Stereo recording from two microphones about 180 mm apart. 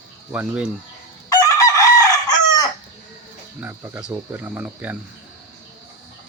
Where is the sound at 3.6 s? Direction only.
10° right (ahead or behind).